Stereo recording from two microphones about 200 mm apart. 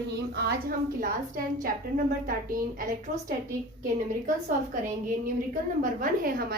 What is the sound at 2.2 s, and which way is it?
A woman's voice, 45° right (ahead or behind).